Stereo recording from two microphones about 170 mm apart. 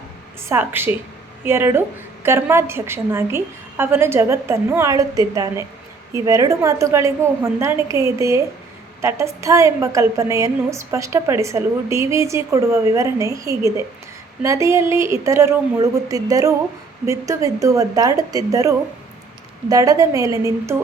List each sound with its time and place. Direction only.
0.4 s a woman's voice: 15° right (ahead or behind)